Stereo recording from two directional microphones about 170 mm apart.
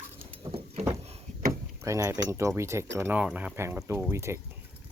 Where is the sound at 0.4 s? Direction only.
35° right (ahead or behind).